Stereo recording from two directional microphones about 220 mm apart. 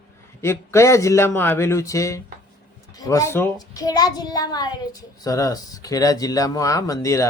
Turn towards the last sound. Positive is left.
turn(degrees=15)  # may be behind; listen again after turning